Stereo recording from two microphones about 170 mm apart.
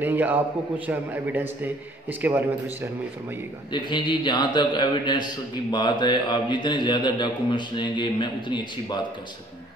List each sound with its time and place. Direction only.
0.0 s a man's voice: 10° right (ahead or behind)
3.7 s a man's voice: 25° left (ahead or behind)